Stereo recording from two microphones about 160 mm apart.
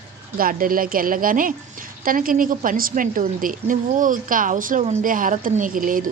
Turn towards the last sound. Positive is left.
turn(degrees=-55)  # may be behind; listen again after turning